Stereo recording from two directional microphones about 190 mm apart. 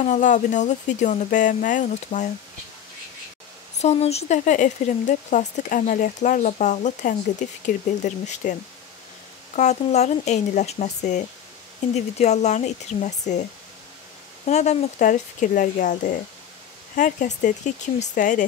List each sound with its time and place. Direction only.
0.0 s speech: 40° left (ahead or behind)
3.8 s speech: 35° left (ahead or behind)
9.6 s speech: 40° left (ahead or behind)
14.4 s speech: 35° left (ahead or behind)